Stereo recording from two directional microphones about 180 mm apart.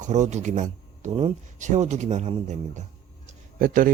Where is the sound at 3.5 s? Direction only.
50° right (ahead or behind).